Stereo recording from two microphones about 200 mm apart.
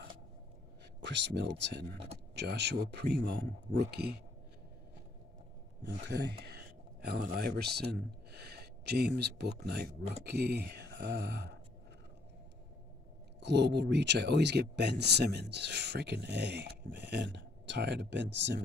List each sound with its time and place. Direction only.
1.0 s speech: 60° right (ahead or behind)
6.0 s a sound: 55° right (ahead or behind)
7.3 s speech: 50° right (ahead or behind)
13.4 s speech: 60° right (ahead or behind)